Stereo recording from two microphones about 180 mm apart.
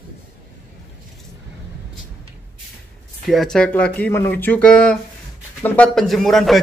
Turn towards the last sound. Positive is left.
turn(degrees=0)  # may be behind; listen again after turning